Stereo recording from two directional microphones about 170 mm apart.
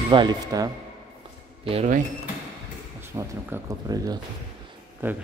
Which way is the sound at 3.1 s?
20° right (ahead or behind).